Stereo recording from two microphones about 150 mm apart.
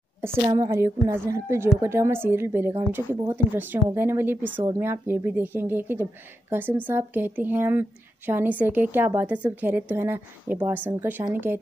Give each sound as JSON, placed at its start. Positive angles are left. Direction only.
{"t": 0.6, "sound": "a woman's voice", "side_deg": -20}